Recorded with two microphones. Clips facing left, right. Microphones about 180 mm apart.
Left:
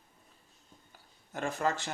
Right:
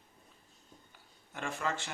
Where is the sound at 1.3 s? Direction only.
40° left (ahead or behind).